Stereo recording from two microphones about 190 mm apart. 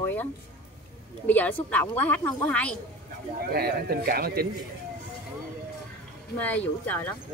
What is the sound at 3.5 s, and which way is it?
Speech, 55° right (ahead or behind).